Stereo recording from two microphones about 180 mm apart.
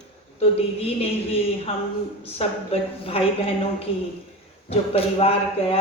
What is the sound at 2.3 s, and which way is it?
Speech, 30° left (ahead or behind).